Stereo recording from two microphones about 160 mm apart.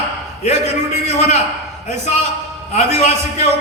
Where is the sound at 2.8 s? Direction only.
45° left (ahead or behind).